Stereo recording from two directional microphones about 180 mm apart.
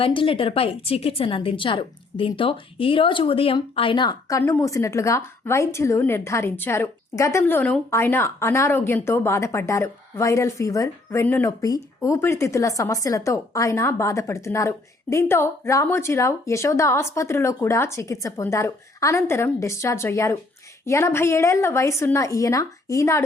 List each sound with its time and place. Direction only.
0.0 s speech: 30° left (ahead or behind)